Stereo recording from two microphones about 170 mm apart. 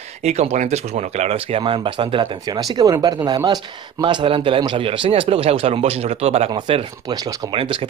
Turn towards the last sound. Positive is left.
turn(degrees=-35)  # may be behind; listen again after turning